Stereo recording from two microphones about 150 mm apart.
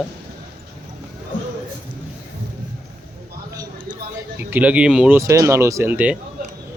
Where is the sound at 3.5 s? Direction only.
25° right (ahead or behind).